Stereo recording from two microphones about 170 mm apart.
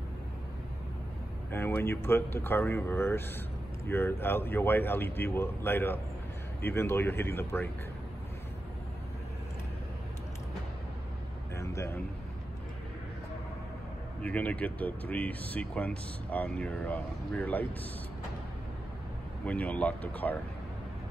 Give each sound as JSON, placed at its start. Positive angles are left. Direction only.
{"t": 1.5, "sound": "speech", "side_deg": 15}
{"t": 11.5, "sound": "a sound", "side_deg": 15}
{"t": 14.2, "sound": "speech", "side_deg": 10}
{"t": 19.4, "sound": "speech", "side_deg": 10}